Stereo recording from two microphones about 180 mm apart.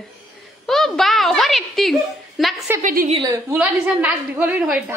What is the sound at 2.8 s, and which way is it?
Speech, 45° right (ahead or behind).